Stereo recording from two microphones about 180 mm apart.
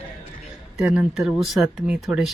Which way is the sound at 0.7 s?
5° right (ahead or behind).